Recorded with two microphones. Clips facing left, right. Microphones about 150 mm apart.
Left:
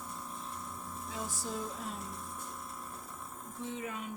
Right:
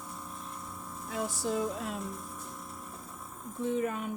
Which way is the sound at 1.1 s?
75° right (ahead or behind).